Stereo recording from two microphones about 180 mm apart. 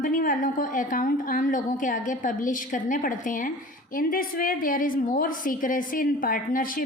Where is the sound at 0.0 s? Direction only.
50° left (ahead or behind).